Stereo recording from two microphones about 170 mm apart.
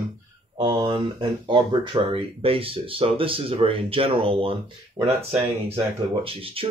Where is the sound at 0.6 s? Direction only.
25° right (ahead or behind).